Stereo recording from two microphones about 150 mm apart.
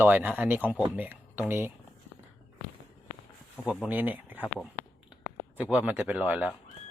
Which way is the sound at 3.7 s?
10° right (ahead or behind).